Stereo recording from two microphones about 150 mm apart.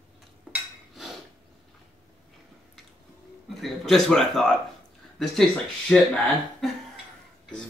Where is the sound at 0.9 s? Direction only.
Centre (ahead or behind).